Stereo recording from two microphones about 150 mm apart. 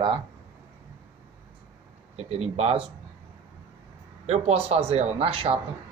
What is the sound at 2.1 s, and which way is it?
Speech, 45° right (ahead or behind).